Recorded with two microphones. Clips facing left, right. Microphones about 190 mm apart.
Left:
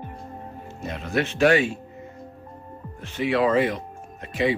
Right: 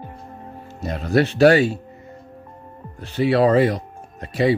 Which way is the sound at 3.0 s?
35° right (ahead or behind).